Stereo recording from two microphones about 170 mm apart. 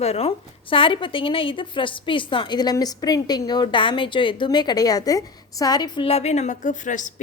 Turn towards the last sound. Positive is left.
turn(degrees=50)  # may be behind; listen again after turning